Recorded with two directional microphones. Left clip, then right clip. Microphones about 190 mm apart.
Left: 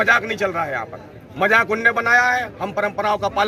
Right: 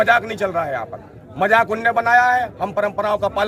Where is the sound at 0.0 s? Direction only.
35° right (ahead or behind).